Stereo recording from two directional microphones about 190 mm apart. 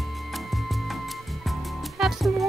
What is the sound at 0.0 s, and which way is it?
Music, centre (ahead or behind).